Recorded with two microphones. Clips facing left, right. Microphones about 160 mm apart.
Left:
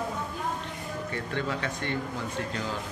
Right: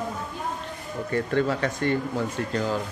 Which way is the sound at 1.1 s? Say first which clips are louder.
Right 9 dB; 45° right (ahead or behind).